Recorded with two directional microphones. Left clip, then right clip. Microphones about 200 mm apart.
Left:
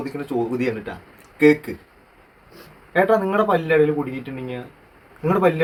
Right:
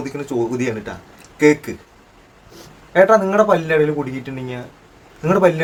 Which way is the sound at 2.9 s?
10° right (ahead or behind).